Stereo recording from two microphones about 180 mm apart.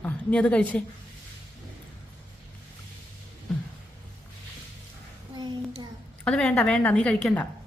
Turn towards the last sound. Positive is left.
turn(degrees=5)  # may be behind; listen again after turning